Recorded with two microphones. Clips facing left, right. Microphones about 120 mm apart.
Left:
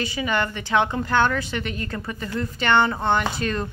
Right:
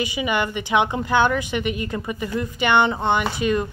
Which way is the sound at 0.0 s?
15° right (ahead or behind).